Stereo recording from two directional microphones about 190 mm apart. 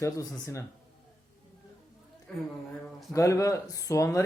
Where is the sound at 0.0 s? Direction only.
15° left (ahead or behind).